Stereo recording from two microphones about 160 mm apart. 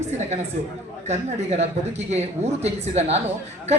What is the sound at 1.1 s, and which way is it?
A woman's voice, 45° right (ahead or behind).